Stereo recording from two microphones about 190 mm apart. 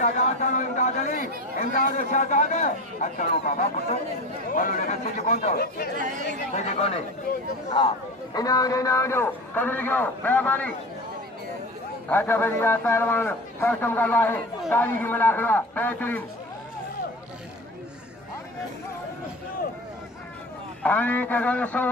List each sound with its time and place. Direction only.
0.0 s a man's voice: 40° left (ahead or behind)
5.9 s speech: 45° right (ahead or behind)
6.5 s a man's voice: 35° left (ahead or behind)
7.7 s a man's voice: 25° left (ahead or behind)
12.1 s a man's voice: 10° left (ahead or behind)
20.8 s a man's voice: 10° left (ahead or behind)